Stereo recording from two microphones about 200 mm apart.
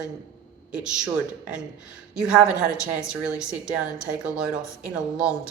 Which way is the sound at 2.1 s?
5° right (ahead or behind).